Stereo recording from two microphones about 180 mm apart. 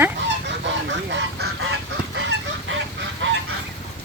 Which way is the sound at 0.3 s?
80° right.